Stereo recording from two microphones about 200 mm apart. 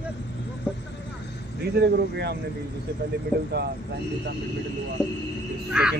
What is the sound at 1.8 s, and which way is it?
Speech, 55° right (ahead or behind).